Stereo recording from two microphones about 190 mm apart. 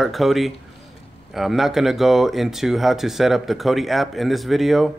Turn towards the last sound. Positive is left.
turn(degrees=0)  # may be behind; listen again after turning